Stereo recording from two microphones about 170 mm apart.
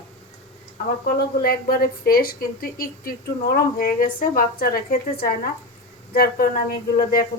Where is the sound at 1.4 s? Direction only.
60° left (ahead or behind).